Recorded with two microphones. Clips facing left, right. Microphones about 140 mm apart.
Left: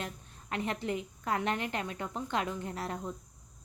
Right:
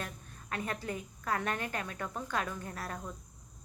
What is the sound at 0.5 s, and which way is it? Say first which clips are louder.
A woman's voice: left 3 dB; 25° left (ahead or behind).